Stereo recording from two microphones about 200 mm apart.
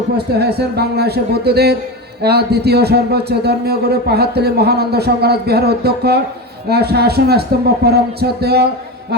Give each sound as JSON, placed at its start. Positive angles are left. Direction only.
{"t": 0.3, "sound": "speech", "side_deg": -55}